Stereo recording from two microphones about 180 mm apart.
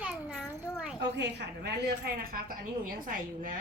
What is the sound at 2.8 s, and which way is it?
Speech, 50° right (ahead or behind).